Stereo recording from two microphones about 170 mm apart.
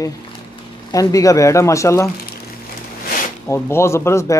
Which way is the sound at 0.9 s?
20° left (ahead or behind).